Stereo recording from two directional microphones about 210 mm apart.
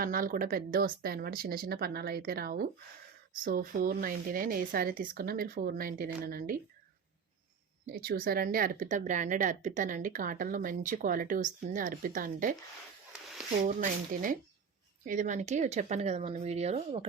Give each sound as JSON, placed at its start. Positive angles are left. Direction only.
{"t": 0.0, "sound": "speech", "side_deg": -45}
{"t": 7.9, "sound": "speech", "side_deg": -45}
{"t": 13.7, "sound": "speech", "side_deg": -40}